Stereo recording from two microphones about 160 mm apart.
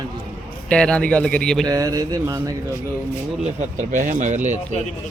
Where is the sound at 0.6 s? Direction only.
5° left (ahead or behind).